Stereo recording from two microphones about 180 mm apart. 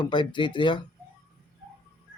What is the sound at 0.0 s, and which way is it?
Speech, 25° left (ahead or behind).